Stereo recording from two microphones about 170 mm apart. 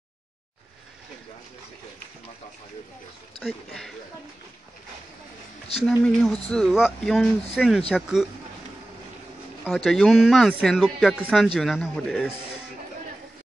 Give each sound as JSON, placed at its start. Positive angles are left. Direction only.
{"t": 3.3, "sound": "speech", "side_deg": 0}
{"t": 5.9, "sound": "speech", "side_deg": 5}
{"t": 9.8, "sound": "speech", "side_deg": 0}